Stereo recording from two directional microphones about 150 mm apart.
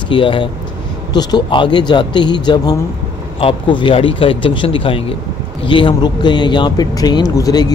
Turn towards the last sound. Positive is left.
turn(degrees=25)  # may be behind; listen again after turning